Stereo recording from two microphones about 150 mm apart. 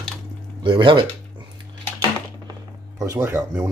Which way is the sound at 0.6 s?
30° right (ahead or behind).